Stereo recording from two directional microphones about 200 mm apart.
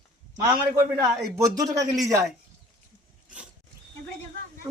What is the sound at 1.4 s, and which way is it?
Speech, 15° right (ahead or behind).